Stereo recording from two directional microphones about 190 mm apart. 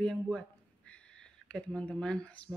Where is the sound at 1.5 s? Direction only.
5° left (ahead or behind).